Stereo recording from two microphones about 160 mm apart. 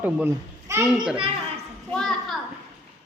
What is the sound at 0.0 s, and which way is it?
Speech, 10° right (ahead or behind).